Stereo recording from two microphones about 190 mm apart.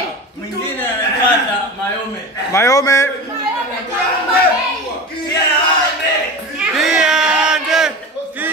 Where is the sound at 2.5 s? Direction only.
15° left (ahead or behind).